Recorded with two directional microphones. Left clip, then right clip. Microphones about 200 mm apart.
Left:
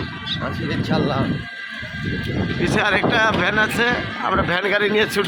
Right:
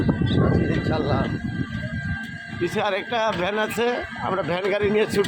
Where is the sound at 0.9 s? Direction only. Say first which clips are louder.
Left 6 dB; 35° left (ahead or behind).